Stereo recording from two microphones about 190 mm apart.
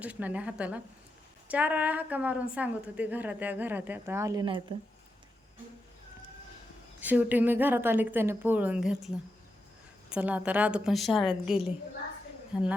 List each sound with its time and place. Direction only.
0.0 s a woman's voice: 10° right (ahead or behind)
4.7 s speech: 30° right (ahead or behind)
7.0 s a woman's voice: 10° right (ahead or behind)